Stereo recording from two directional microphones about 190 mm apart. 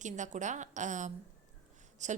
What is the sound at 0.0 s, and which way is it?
A woman's voice, 40° right (ahead or behind).